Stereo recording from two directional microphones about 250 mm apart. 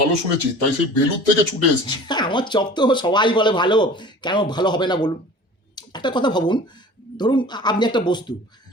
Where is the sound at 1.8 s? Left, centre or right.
Centre.